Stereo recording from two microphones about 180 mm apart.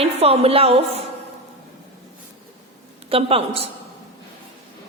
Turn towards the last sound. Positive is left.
turn(degrees=-30)  # may be behind; listen again after turning